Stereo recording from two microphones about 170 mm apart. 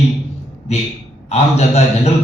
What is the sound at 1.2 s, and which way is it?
Speech, 40° left (ahead or behind).